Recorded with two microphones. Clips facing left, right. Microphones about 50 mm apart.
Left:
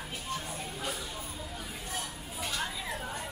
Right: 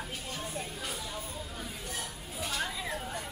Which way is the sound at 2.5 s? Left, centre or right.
Centre.